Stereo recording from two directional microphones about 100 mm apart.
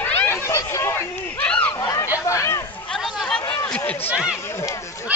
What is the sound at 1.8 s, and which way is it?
Chatter, 30° left (ahead or behind).